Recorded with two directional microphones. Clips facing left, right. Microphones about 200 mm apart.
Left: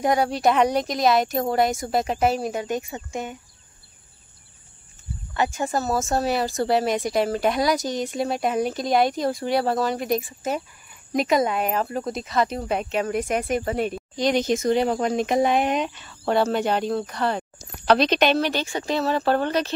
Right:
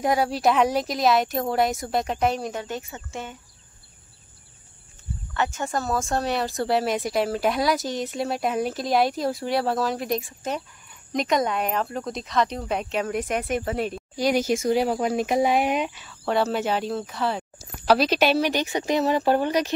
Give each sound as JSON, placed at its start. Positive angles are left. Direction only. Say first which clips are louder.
{"t": 0.0, "sound": "speech", "louder": "left 1 dB", "side_deg": 0}
{"t": 2.6, "sound": "speech", "louder": "left 5 dB", "side_deg": 15}
{"t": 5.3, "sound": "speech", "louder": "left 2 dB", "side_deg": 10}